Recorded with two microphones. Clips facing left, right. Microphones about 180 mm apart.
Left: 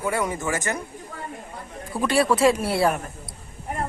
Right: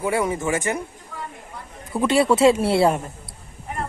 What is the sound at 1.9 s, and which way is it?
A man's voice, 20° right (ahead or behind).